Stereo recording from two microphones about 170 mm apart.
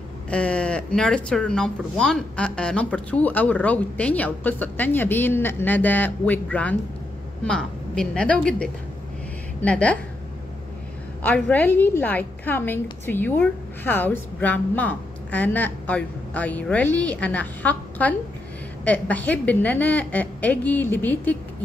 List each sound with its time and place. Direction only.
0.3 s a woman's voice: 5° left (ahead or behind)
11.2 s speech: 10° left (ahead or behind)